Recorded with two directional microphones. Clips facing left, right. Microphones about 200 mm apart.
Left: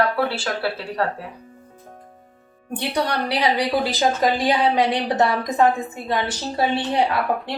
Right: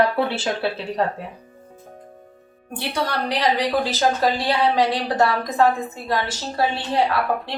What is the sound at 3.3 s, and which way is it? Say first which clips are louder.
A woman's voice: right 1 dB; 10° left (ahead or behind).